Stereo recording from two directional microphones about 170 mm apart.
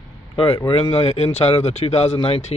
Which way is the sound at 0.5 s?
30° left (ahead or behind).